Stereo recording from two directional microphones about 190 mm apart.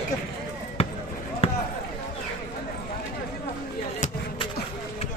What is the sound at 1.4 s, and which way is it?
Basketball bounce, 30° left (ahead or behind).